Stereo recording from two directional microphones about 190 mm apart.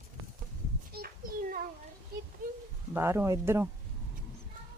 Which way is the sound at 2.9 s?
15° right (ahead or behind).